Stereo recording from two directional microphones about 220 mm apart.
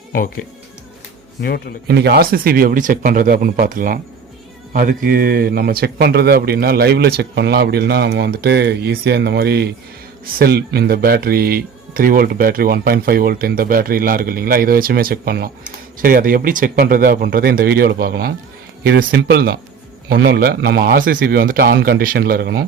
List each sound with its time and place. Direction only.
0.1 s speech: 40° left (ahead or behind)
1.9 s speech: 45° right (ahead or behind)